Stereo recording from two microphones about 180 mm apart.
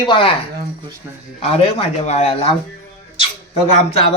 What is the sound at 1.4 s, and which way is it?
Speech, 35° left (ahead or behind).